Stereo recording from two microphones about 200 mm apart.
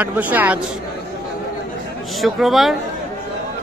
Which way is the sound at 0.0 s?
10° right (ahead or behind).